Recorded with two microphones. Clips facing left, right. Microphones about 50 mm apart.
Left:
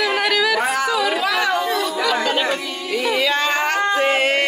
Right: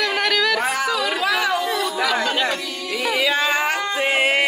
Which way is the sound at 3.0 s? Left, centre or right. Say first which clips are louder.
Left 1 dB; centre.